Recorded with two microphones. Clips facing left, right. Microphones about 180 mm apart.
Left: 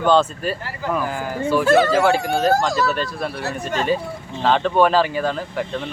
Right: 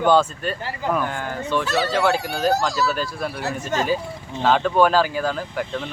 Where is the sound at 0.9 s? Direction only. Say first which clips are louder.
Left 1 dB; 5° left (ahead or behind).